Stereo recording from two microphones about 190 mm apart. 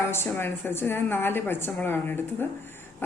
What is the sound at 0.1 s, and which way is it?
A woman's voice, 10° left (ahead or behind).